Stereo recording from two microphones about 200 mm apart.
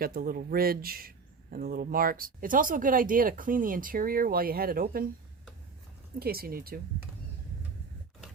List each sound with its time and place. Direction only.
0.0 s speech: 45° right (ahead or behind)
6.1 s speech: 50° right (ahead or behind)